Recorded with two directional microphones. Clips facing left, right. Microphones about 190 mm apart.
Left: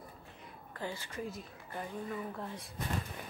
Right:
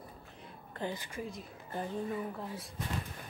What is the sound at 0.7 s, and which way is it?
Speech, 20° right (ahead or behind).